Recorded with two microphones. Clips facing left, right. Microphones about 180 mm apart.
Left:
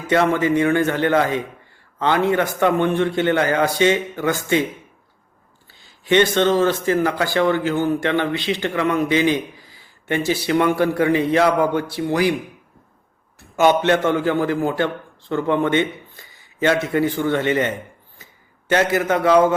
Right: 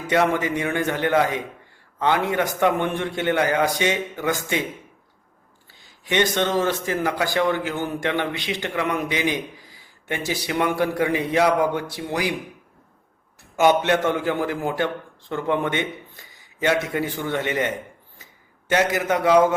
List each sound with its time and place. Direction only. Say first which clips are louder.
0.1 s a man's voice: left 4 dB; 15° right (ahead or behind)
6.1 s a man's voice: left 6 dB; 15° right (ahead or behind)
13.6 s a man's voice: left 2 dB; 10° right (ahead or behind)
18.7 s a man's voice: left 3 dB; 10° right (ahead or behind)